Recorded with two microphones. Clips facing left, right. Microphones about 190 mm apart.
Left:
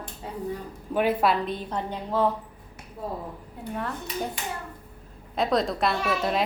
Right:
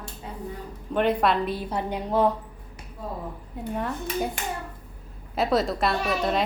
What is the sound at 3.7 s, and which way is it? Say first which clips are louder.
Speech: right 3 dB; 15° right (ahead or behind).